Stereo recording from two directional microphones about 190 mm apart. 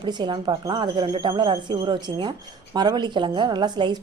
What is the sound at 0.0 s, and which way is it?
Speech, 20° right (ahead or behind).